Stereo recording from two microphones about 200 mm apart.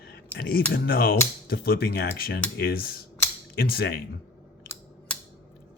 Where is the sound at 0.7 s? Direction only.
50° left (ahead or behind).